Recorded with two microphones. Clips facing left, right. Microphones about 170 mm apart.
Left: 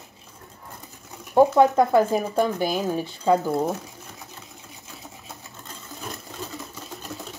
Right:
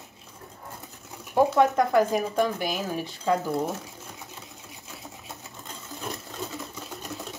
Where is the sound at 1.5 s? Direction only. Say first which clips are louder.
Left 3 dB; 25° left (ahead or behind).